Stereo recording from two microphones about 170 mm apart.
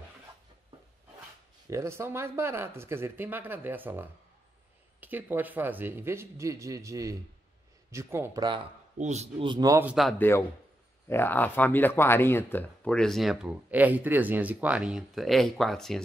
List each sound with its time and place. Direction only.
1.7 s speech: 15° right (ahead or behind)
8.9 s a man's voice: 40° right (ahead or behind); by 9.8 s 25° right (ahead or behind)
9.8 s speech: 5° right (ahead or behind)
10.1 s a man's voice: 10° left (ahead or behind)